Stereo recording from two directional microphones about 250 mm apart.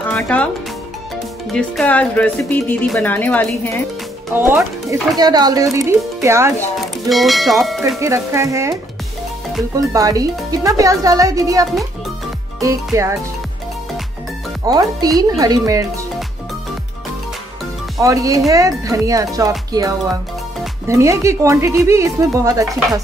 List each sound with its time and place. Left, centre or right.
0.1 s speech: centre
1.5 s speech: centre
4.3 s speech: centre
5.1 s speech: centre
6.8 s speech: centre
8.0 s speech: centre
9.8 s speech: centre
14.7 s speech: centre
17.9 s speech: centre